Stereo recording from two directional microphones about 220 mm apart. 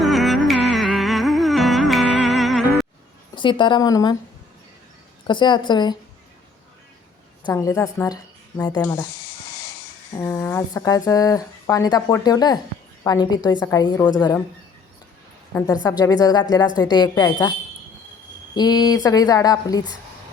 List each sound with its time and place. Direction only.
0.0 s music: centre (ahead or behind)
3.3 s a woman's voice: 20° left (ahead or behind)
5.3 s a woman's voice: 20° left (ahead or behind)
7.4 s speech: 15° left (ahead or behind)
10.2 s a woman's voice: 10° left (ahead or behind)
15.5 s speech: 15° left (ahead or behind)
18.5 s speech: 20° left (ahead or behind)